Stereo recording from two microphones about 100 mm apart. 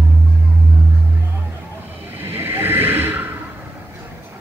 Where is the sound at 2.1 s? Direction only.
25° right (ahead or behind).